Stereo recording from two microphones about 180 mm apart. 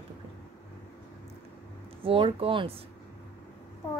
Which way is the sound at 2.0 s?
30° right (ahead or behind).